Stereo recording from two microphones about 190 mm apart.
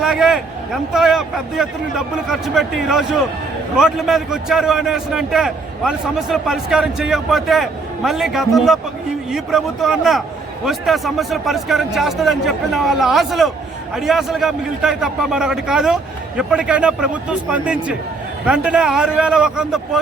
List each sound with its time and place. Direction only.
0.0 s a man's voice: centre (ahead or behind)